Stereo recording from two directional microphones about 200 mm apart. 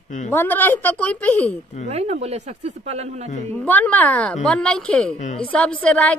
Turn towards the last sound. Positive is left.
turn(degrees=5)  # may be behind; listen again after turning